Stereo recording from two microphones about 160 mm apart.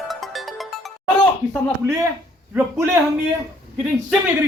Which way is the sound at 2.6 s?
15° right (ahead or behind).